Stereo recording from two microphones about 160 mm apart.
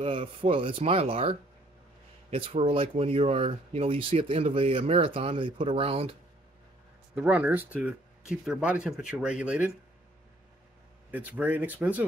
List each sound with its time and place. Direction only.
0.0 s speech: 35° right (ahead or behind)
7.2 s speech: 10° right (ahead or behind)
11.1 s speech: 10° right (ahead or behind)